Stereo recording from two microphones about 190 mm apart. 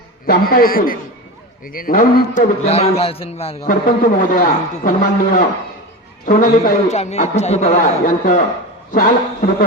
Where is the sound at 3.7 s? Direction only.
45° left (ahead or behind).